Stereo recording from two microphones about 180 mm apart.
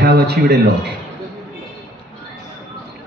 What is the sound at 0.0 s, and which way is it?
Speech, 65° right (ahead or behind).